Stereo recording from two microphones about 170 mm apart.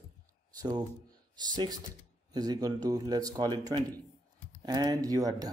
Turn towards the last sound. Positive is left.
turn(degrees=-20)  # may be behind; listen again after turning